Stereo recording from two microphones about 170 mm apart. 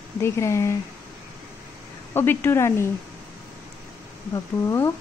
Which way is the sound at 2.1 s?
15° left (ahead or behind).